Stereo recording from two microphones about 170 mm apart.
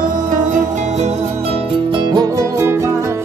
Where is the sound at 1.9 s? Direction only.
25° right (ahead or behind).